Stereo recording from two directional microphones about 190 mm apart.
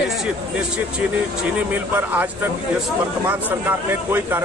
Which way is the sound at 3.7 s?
10° right (ahead or behind).